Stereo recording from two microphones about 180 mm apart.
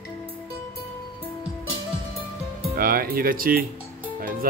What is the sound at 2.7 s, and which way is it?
Speech, 55° right (ahead or behind).